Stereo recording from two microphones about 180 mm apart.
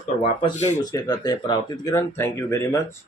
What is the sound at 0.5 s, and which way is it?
Speech, 40° left (ahead or behind).